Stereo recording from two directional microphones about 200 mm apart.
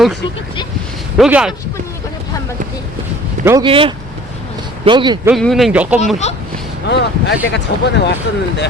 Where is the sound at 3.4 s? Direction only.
15° right (ahead or behind).